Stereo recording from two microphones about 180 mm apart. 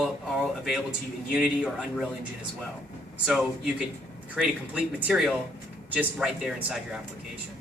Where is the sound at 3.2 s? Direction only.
5° right (ahead or behind).